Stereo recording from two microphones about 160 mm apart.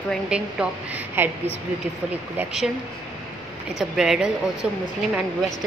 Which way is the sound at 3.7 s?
5° right (ahead or behind).